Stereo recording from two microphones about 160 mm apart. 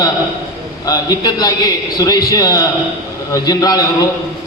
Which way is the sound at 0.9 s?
25° left (ahead or behind).